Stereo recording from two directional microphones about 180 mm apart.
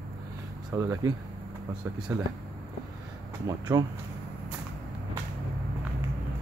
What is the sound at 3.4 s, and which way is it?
Speech, 20° right (ahead or behind).